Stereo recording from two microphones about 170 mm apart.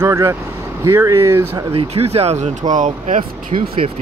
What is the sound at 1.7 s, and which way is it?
Speech, 35° right (ahead or behind).